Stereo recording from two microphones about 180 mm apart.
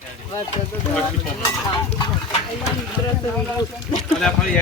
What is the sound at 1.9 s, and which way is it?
Speech, 25° left (ahead or behind).